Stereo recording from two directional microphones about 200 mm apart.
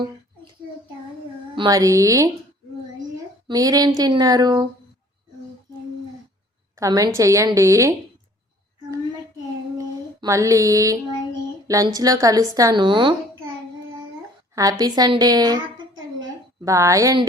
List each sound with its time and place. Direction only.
1.5 s a woman's voice: 20° right (ahead or behind)
3.4 s a sound: 20° right (ahead or behind)
6.7 s a woman's voice: 15° right (ahead or behind)
9.7 s child singing: 15° right (ahead or behind)
11.7 s a woman's voice: 15° right (ahead or behind)
14.5 s a sound: 20° right (ahead or behind)
16.6 s a woman's voice: 15° right (ahead or behind)